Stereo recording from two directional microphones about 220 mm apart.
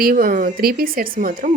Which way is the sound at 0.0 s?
40° right (ahead or behind).